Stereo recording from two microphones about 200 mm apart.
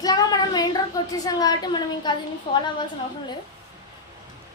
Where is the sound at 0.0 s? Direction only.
20° left (ahead or behind).